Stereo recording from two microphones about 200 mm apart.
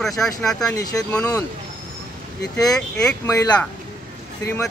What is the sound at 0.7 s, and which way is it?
Speech, 15° left (ahead or behind).